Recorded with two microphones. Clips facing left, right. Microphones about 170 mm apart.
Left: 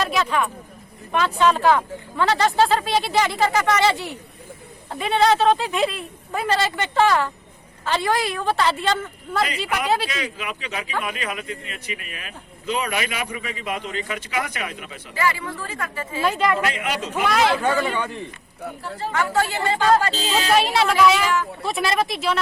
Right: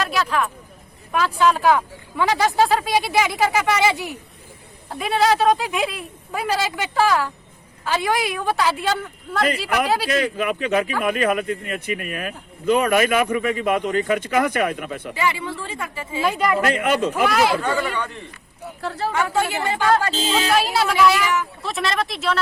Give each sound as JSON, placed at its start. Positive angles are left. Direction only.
{"t": 0.0, "sound": "speech", "side_deg": 0}
{"t": 10.1, "sound": "speech", "side_deg": -50}
{"t": 15.1, "sound": "speech", "side_deg": -20}
{"t": 16.6, "sound": "speech", "side_deg": -50}
{"t": 17.2, "sound": "speech", "side_deg": -5}
{"t": 17.6, "sound": "speech", "side_deg": 15}
{"t": 18.8, "sound": "speech", "side_deg": -80}
{"t": 19.1, "sound": "speech", "side_deg": -15}
{"t": 20.5, "sound": "speech", "side_deg": 0}